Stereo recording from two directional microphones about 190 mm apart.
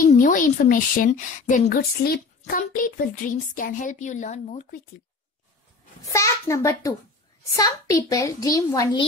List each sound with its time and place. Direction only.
0.0 s a woman's voice: 45° left (ahead or behind)
6.1 s a child's voice: 15° left (ahead or behind)